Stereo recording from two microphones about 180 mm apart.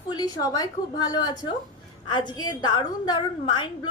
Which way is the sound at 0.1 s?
20° left (ahead or behind).